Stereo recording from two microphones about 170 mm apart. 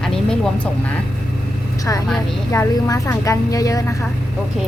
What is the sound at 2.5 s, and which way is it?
A woman's voice, 20° left (ahead or behind).